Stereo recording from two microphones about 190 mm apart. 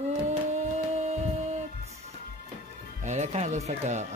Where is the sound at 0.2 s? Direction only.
35° right (ahead or behind).